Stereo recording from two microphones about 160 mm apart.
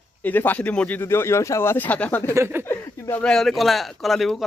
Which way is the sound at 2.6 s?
15° left (ahead or behind).